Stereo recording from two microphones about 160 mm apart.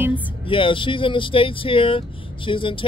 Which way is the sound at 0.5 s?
30° left (ahead or behind).